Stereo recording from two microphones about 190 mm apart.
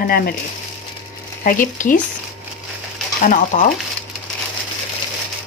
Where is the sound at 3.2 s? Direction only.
45° left (ahead or behind).